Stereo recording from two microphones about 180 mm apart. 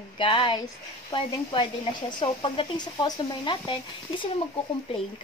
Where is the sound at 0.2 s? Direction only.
30° left (ahead or behind).